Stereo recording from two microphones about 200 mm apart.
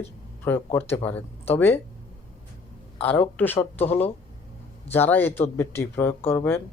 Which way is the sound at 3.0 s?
10° left (ahead or behind).